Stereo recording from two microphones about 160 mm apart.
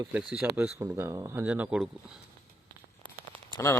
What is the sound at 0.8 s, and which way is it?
Speech, 15° right (ahead or behind).